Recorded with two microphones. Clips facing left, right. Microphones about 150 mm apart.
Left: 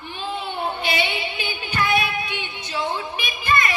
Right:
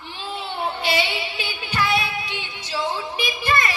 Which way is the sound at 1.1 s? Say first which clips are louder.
Left 1 dB; 20° left (ahead or behind).